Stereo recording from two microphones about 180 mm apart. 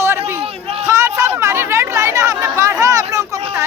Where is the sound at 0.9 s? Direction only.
15° right (ahead or behind).